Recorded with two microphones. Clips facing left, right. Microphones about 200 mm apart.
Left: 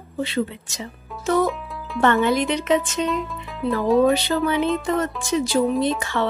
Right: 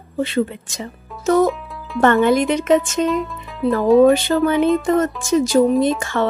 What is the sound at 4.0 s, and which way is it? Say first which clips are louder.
Speech: right 5 dB; 50° right (ahead or behind).